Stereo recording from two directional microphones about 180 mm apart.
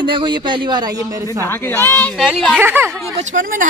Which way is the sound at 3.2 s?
45° right (ahead or behind).